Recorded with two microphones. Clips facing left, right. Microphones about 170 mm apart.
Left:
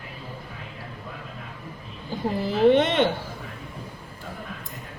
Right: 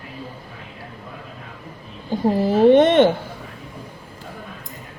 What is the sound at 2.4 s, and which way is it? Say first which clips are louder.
Speech: right 5 dB; 50° right (ahead or behind).